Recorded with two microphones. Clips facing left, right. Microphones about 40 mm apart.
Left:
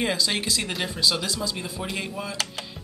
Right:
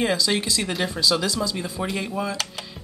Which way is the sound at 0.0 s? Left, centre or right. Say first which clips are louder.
Right 3 dB; centre.